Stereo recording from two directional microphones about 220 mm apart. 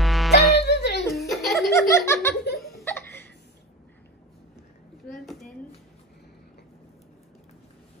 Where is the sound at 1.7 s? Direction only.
15° left (ahead or behind).